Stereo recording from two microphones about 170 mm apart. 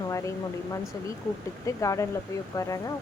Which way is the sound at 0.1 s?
20° left (ahead or behind).